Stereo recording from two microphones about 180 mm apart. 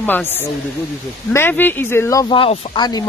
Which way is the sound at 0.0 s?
10° left (ahead or behind).